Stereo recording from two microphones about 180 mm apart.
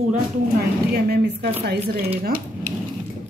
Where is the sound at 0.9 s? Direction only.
65° right (ahead or behind).